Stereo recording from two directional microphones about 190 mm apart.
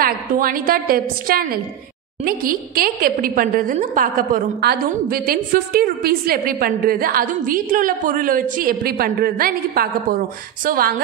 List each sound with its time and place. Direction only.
0.0 s a woman's voice: 50° right (ahead or behind)